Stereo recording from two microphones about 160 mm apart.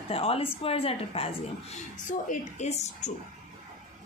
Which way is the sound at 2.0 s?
50° left (ahead or behind).